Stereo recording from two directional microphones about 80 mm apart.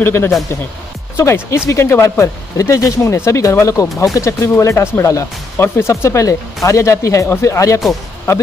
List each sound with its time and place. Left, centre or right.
0.0 s speech: left